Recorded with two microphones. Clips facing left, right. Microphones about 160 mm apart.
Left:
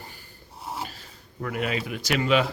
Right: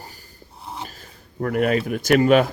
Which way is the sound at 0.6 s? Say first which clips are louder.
Even; 5° left (ahead or behind).